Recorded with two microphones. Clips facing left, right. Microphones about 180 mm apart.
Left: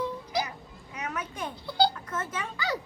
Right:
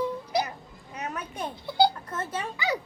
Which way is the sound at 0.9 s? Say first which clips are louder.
Right 1 dB; 35° right (ahead or behind).